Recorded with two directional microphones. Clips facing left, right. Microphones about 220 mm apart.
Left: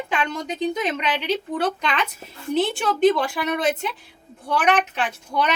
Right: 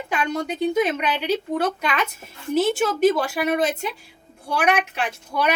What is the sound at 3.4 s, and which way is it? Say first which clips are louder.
Speech: right 3 dB; 50° right (ahead or behind).